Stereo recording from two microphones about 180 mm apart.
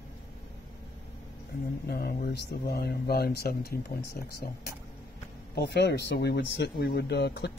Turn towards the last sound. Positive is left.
turn(degrees=70)  # may be behind; listen again after turning